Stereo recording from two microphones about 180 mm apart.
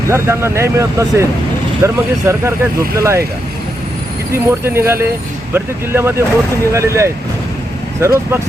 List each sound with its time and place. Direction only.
0.1 s speech: 15° right (ahead or behind)
4.3 s speech: 15° right (ahead or behind)